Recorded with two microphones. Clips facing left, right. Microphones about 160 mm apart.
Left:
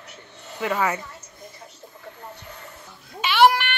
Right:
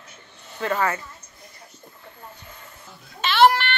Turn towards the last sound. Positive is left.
turn(degrees=10)  # may be behind; listen again after turning